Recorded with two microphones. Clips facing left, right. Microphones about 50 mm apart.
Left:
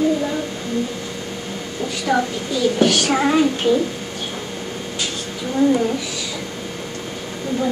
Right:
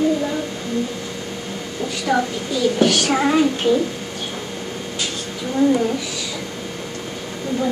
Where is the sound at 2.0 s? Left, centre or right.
Centre.